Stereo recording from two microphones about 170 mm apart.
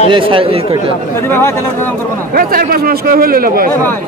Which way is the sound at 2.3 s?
60° right (ahead or behind).